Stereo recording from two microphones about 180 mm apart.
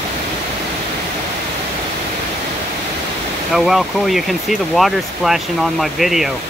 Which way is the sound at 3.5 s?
Centre (ahead or behind).